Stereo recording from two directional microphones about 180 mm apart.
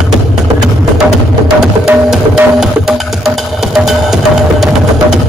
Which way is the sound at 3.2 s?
Centre (ahead or behind).